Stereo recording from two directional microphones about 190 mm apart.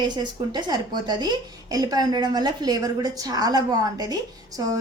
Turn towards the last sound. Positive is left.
turn(degrees=-20)  # may be behind; listen again after turning